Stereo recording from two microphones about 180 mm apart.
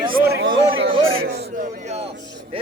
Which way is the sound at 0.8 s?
65° right (ahead or behind).